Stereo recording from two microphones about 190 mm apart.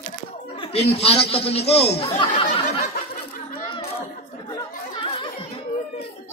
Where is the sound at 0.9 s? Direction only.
30° left (ahead or behind).